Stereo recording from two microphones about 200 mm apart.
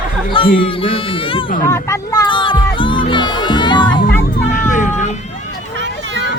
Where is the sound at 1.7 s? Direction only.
15° left (ahead or behind).